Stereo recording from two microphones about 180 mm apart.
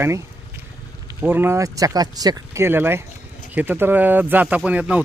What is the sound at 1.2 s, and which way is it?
Speech, 10° right (ahead or behind).